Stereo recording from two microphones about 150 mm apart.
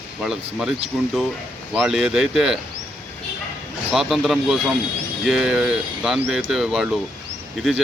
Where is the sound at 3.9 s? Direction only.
Centre (ahead or behind).